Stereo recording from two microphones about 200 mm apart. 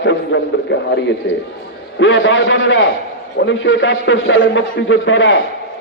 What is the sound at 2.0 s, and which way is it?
A man's voice, 70° left (ahead or behind).